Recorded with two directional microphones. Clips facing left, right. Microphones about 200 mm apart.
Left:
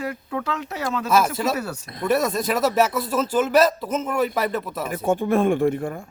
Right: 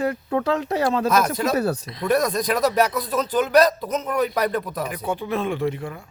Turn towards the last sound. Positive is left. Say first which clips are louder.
# left 5 dB
turn(degrees=50)  # may be behind; listen again after turning